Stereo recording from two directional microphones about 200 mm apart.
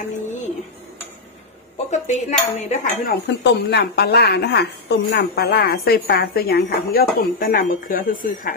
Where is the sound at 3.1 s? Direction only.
60° left (ahead or behind).